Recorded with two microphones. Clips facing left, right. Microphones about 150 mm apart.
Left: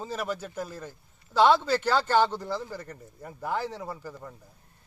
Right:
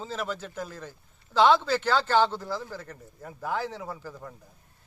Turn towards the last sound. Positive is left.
turn(degrees=10)  # may be behind; listen again after turning